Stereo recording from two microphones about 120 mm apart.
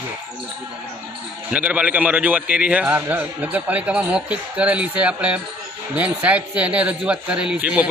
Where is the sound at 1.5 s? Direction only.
10° right (ahead or behind).